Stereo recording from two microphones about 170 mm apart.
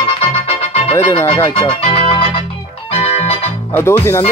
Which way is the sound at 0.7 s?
35° left (ahead or behind).